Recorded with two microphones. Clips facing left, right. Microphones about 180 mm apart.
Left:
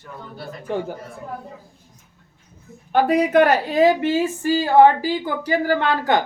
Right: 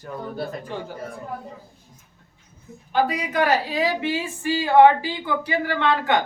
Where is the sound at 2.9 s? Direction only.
55° left (ahead or behind); by 6.2 s 40° left (ahead or behind).